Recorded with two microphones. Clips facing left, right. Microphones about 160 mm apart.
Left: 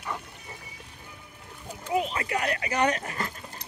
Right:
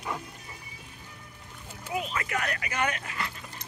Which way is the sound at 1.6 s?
20° left (ahead or behind).